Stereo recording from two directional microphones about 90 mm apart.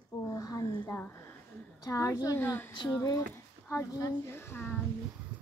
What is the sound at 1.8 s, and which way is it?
Speech, 40° left (ahead or behind).